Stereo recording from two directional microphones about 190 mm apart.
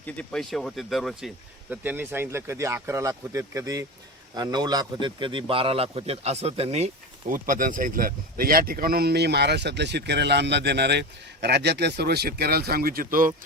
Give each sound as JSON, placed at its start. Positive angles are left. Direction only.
{"t": 0.0, "sound": "a man's voice", "side_deg": 5}